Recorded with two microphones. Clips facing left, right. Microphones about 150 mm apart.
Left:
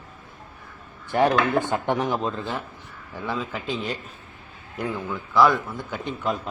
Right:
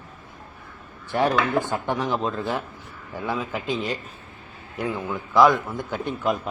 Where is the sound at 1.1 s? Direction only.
15° left (ahead or behind).